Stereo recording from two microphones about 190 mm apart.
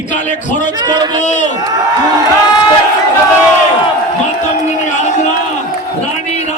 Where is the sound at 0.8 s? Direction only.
25° right (ahead or behind).